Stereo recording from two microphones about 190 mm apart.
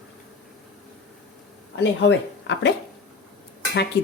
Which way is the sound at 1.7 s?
70° left (ahead or behind).